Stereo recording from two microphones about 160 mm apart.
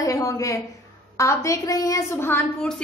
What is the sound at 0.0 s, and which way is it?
A woman's voice, 20° left (ahead or behind).